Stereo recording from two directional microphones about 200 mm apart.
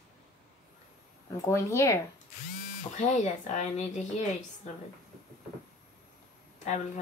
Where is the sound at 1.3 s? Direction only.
15° left (ahead or behind).